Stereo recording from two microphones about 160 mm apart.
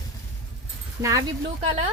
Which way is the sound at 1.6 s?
40° right (ahead or behind).